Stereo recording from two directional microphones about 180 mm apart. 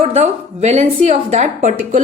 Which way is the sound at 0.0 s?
40° right (ahead or behind).